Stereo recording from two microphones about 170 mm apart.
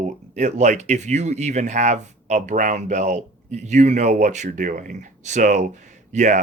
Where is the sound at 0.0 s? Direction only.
45° right (ahead or behind).